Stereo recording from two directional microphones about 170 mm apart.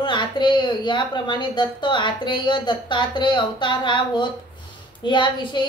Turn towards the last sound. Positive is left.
turn(degrees=25)  # may be behind; listen again after turning